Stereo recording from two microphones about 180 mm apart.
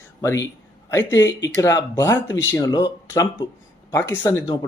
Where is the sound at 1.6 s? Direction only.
15° left (ahead or behind).